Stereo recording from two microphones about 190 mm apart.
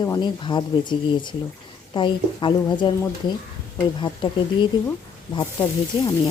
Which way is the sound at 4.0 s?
25° left (ahead or behind).